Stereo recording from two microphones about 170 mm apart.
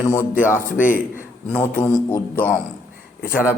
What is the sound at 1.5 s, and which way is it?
Mantra, 10° left (ahead or behind).